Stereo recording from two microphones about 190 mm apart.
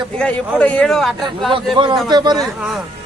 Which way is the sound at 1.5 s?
25° right (ahead or behind).